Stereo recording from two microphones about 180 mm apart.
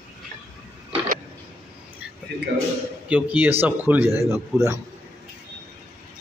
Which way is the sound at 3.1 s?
10° right (ahead or behind).